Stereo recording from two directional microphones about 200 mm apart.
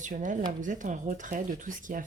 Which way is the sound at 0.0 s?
40° right (ahead or behind).